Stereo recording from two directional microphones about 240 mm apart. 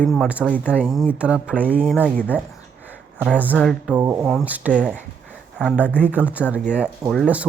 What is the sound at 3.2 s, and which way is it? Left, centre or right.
Speech, centre.